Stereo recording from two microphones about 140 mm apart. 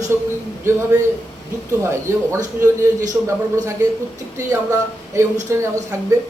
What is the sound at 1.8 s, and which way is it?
Speech, 20° right (ahead or behind).